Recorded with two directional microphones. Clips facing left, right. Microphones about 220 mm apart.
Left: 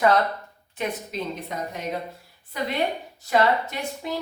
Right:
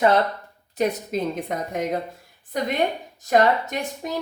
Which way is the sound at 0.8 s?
50° right (ahead or behind).